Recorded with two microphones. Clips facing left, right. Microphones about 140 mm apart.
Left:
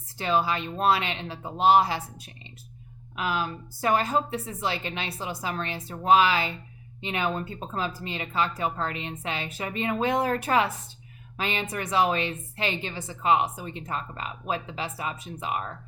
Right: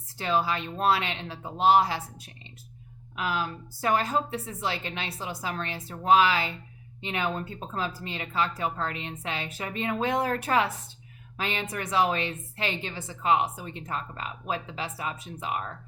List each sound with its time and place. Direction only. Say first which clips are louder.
0.2 s a woman's voice: left 2 dB; 20° left (ahead or behind)